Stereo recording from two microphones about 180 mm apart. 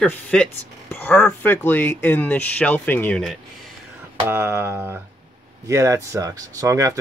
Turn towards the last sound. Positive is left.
turn(degrees=-20)  # may be behind; listen again after turning